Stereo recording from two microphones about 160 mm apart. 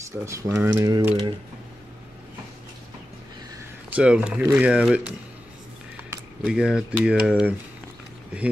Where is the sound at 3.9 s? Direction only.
5° right (ahead or behind).